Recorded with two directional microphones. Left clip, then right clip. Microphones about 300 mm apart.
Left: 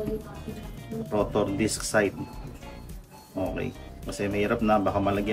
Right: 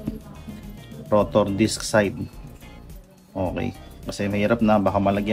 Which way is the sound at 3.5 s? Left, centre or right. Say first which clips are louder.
Right 3 dB; right.